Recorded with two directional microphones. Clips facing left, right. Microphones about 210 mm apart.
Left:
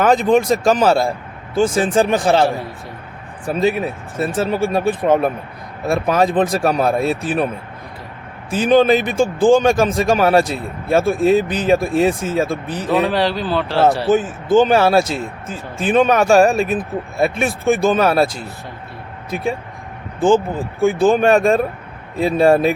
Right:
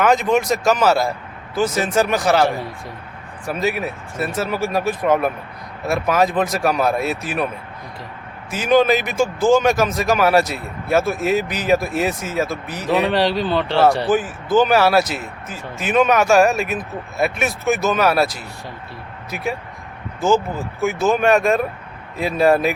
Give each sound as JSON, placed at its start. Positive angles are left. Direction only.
{"t": 0.0, "sound": "speech", "side_deg": 30}
{"t": 8.4, "sound": "speech", "side_deg": 30}
{"t": 13.1, "sound": "speech", "side_deg": 0}
{"t": 14.1, "sound": "speech", "side_deg": 25}